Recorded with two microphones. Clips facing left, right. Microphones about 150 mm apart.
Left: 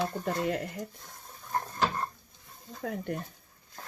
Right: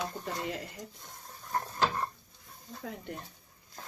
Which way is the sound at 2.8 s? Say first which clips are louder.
Left 7 dB; 55° left (ahead or behind).